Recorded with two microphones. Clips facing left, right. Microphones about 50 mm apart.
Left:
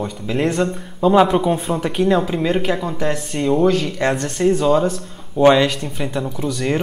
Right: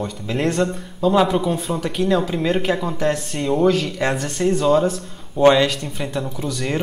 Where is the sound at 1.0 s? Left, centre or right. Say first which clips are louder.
Left 3 dB; centre.